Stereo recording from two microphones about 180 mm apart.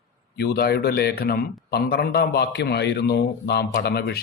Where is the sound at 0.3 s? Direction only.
60° left (ahead or behind).